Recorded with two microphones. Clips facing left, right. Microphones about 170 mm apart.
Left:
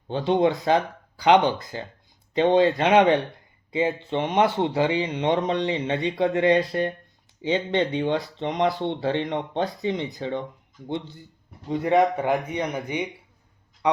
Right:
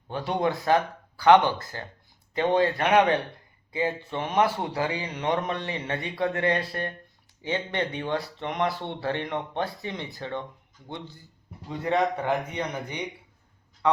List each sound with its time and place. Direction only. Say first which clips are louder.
0.1 s a man's voice: left 6 dB; 25° left (ahead or behind)